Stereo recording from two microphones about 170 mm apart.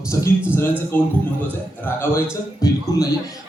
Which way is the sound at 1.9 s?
10° left (ahead or behind).